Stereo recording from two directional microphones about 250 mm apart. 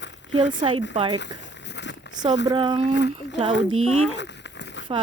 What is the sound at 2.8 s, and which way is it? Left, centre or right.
Speech, left.